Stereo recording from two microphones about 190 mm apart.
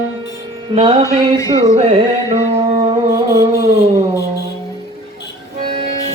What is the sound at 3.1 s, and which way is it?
Music, 15° right (ahead or behind).